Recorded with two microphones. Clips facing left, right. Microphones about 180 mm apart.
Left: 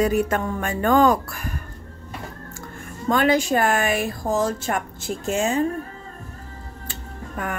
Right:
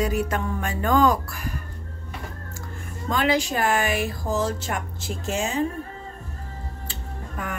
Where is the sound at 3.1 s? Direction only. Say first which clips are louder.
Left 4 dB; 50° left (ahead or behind).